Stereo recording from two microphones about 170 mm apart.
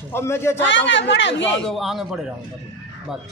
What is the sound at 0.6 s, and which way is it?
Speech, 90° left.